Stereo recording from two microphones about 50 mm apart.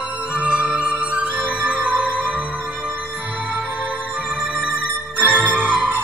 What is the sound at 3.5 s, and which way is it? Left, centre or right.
Music, right.